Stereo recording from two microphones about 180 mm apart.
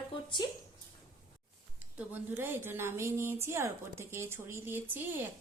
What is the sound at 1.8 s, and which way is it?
A woman's voice, 10° right (ahead or behind).